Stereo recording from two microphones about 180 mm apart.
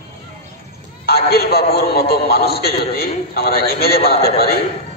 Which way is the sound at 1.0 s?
60° left (ahead or behind).